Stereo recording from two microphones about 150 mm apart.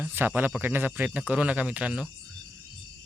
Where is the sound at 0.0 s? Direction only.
15° right (ahead or behind).